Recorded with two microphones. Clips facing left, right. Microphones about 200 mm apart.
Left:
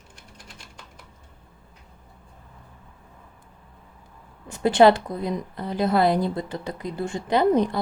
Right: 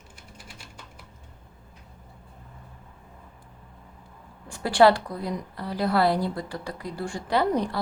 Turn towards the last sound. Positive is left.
turn(degrees=20)  # may be behind; listen again after turning